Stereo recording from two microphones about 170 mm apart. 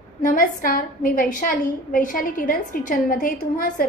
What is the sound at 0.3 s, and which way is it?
A woman's voice, 55° left (ahead or behind).